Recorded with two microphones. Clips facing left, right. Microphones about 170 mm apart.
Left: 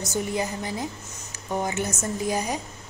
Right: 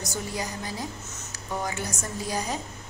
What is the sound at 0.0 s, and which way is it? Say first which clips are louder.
A woman's voice: left 5 dB; 20° left (ahead or behind).